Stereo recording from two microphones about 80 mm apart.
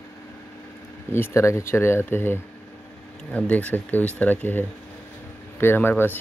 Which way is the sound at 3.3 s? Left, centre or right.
Centre.